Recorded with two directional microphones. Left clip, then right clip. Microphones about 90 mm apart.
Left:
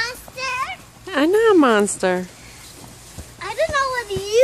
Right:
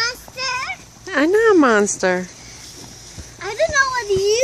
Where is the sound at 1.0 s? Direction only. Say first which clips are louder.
Right 1 dB; 5° left (ahead or behind).